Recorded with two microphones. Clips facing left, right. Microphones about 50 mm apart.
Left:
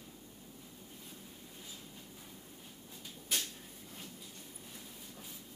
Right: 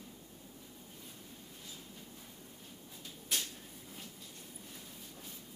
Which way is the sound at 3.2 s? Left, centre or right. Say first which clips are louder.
Even; centre.